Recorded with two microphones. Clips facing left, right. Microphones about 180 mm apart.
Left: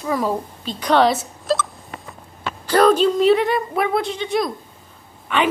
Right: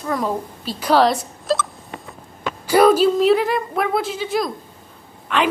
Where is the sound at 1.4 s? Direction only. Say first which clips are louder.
Even; centre (ahead or behind).